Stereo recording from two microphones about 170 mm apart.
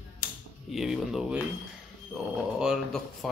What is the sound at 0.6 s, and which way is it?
Speech, centre (ahead or behind).